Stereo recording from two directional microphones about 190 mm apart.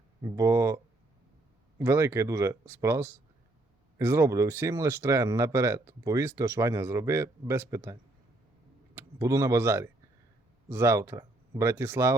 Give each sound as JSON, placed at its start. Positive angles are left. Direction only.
{"t": 0.2, "sound": "speech", "side_deg": -15}
{"t": 1.8, "sound": "speech", "side_deg": -15}
{"t": 9.0, "sound": "speech", "side_deg": -15}